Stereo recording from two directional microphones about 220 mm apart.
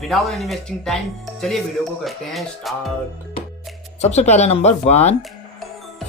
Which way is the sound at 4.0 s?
30° left (ahead or behind).